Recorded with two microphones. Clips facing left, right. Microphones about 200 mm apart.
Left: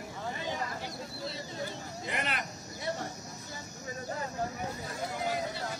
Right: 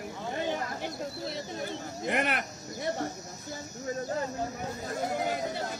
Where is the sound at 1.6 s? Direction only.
60° right (ahead or behind).